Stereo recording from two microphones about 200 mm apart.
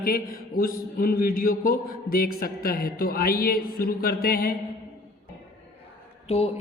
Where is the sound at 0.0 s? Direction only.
45° left (ahead or behind).